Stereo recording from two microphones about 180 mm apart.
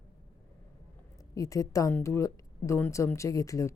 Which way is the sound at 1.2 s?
20° left (ahead or behind).